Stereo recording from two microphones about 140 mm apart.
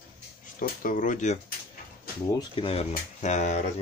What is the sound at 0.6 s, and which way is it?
Speech, 75° left (ahead or behind).